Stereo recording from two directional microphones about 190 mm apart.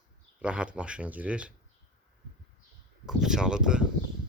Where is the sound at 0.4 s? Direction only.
5° right (ahead or behind).